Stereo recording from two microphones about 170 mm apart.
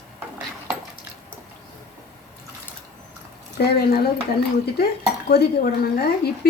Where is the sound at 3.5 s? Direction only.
65° left (ahead or behind).